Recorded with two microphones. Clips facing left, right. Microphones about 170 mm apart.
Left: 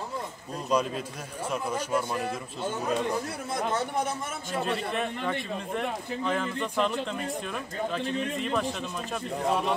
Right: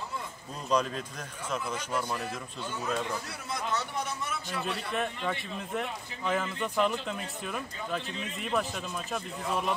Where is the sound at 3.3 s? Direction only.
50° left (ahead or behind).